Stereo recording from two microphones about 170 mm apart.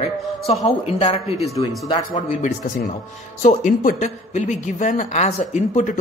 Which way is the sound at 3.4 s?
45° left (ahead or behind).